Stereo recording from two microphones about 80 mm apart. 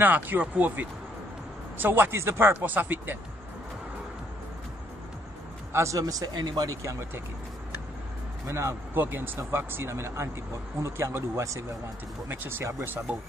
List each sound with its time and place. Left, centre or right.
0.0 s speech: right
5.7 s speech: right
5.9 s speech: right
8.5 s speech: right
8.9 s speech: right
12.3 s speech: right